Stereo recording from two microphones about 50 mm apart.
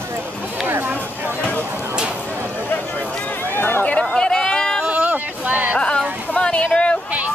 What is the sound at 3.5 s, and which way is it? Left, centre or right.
Chatter, left.